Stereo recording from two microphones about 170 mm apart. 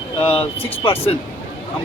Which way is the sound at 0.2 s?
35° left (ahead or behind).